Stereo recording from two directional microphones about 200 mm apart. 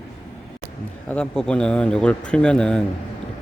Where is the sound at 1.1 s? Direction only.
5° left (ahead or behind).